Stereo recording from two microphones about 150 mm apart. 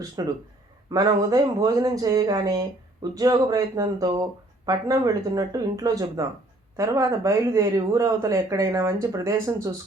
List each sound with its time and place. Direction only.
0.2 s speech: 25° right (ahead or behind)